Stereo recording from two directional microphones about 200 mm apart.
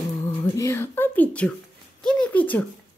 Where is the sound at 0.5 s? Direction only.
15° left (ahead or behind).